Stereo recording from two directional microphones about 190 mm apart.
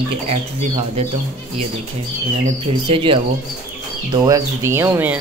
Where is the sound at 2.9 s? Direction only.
30° right (ahead or behind).